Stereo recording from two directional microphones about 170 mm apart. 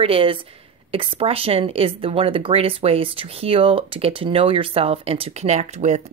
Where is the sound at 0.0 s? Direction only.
35° right (ahead or behind).